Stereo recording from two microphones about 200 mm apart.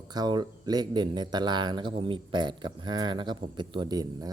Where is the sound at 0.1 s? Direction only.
20° right (ahead or behind).